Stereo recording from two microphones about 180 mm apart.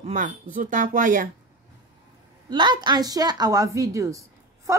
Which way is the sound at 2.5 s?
25° right (ahead or behind).